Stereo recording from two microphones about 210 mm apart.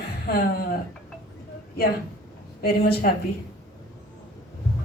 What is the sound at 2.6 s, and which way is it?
Speech, 45° left (ahead or behind).